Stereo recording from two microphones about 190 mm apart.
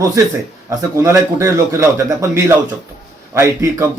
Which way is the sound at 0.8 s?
15° right (ahead or behind).